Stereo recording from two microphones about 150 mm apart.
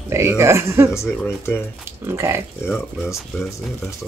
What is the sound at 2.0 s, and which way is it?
Speech, 15° right (ahead or behind).